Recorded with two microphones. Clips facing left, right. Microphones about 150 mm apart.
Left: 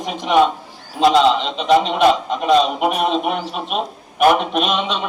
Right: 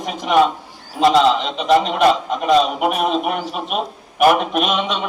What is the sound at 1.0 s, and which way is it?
A man's voice, centre (ahead or behind).